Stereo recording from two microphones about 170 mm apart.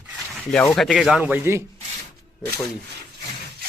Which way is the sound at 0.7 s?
Centre (ahead or behind).